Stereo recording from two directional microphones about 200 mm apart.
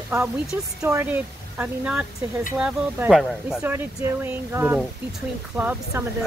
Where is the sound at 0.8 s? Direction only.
10° right (ahead or behind).